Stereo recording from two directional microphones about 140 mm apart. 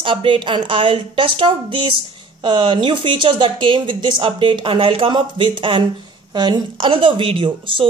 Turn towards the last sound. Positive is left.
turn(degrees=-40)  # may be behind; listen again after turning